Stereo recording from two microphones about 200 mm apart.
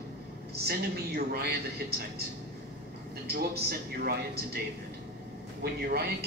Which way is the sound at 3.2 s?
50° right (ahead or behind).